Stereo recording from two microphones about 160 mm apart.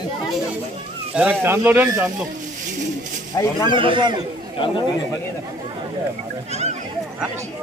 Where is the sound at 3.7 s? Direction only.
30° right (ahead or behind).